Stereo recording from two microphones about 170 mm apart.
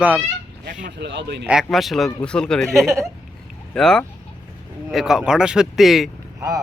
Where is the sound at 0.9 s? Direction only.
85° right.